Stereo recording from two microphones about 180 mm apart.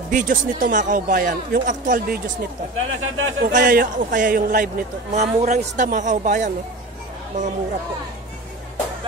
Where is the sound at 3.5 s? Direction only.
45° right (ahead or behind).